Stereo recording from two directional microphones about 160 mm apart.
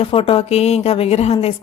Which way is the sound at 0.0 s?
35° left (ahead or behind).